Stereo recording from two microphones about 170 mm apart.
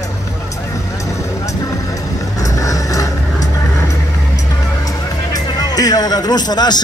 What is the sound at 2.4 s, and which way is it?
Vehicle, 20° left (ahead or behind).